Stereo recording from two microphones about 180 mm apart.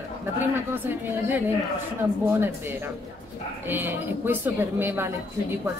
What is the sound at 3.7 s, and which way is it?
A woman's voice, 10° right (ahead or behind).